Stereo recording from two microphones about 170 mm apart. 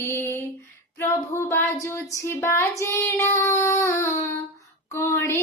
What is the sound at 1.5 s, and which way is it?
Child singing, 15° left (ahead or behind).